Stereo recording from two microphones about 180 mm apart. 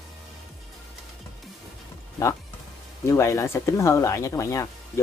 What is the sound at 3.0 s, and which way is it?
Speech, 15° left (ahead or behind).